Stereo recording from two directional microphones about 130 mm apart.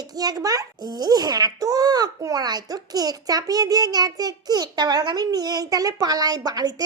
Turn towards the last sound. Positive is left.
turn(degrees=-30)  # may be behind; listen again after turning